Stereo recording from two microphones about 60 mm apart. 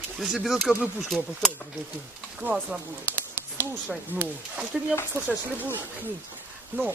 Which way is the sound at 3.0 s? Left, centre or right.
Right.